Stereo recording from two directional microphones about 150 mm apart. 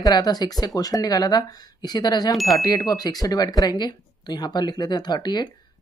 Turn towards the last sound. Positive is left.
turn(degrees=30)  # may be behind; listen again after turning